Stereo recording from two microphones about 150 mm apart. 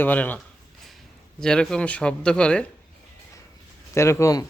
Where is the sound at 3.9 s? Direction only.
20° left (ahead or behind).